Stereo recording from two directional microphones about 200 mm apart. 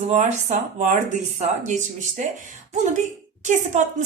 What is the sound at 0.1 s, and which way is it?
A woman's voice, 35° right (ahead or behind).